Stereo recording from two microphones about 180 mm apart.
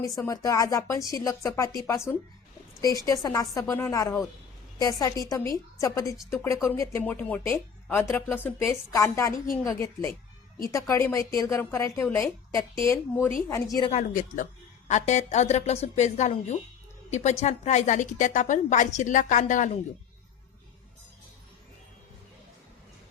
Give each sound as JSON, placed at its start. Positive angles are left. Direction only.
{"t": 0.0, "sound": "speech", "side_deg": 20}
{"t": 3.1, "sound": "speech", "side_deg": 20}
{"t": 13.9, "sound": "a woman's voice", "side_deg": 45}